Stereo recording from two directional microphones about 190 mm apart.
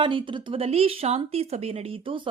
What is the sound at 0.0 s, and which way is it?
A woman's voice, 30° right (ahead or behind).